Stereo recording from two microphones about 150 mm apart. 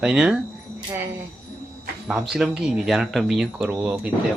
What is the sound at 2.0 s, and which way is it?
Speech, centre (ahead or behind).